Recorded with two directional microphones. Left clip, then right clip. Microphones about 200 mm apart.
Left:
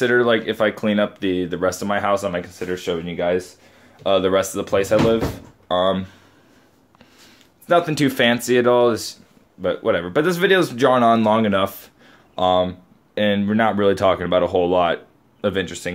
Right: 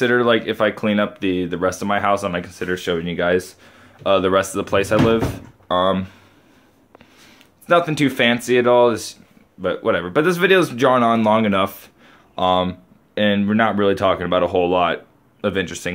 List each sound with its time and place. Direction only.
0.0 s speech: centre (ahead or behind)
7.6 s speech: 5° left (ahead or behind)